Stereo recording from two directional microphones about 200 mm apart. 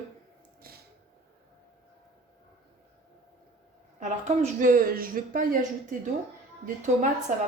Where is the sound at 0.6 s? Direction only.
50° right (ahead or behind).